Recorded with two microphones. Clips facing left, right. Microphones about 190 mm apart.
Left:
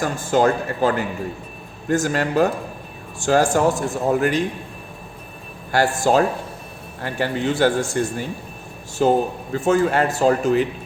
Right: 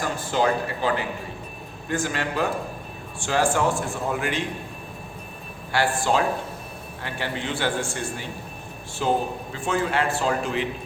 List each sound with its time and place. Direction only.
0.0 s speech: 45° left (ahead or behind)
5.7 s speech: 40° left (ahead or behind)